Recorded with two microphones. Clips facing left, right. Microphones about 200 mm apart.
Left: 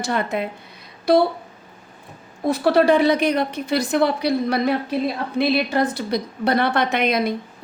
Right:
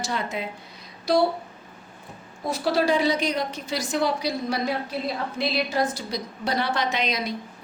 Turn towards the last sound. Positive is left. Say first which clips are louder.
# left 7 dB
turn(degrees=55)  # may be behind; listen again after turning